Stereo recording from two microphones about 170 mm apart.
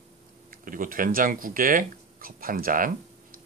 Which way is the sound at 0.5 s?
55° right (ahead or behind).